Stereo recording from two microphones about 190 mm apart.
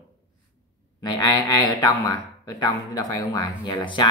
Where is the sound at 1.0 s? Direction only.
20° left (ahead or behind).